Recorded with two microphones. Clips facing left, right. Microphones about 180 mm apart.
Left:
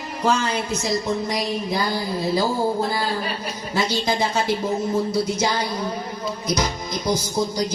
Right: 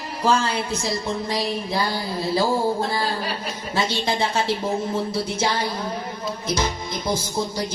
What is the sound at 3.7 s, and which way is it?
Music, 25° right (ahead or behind).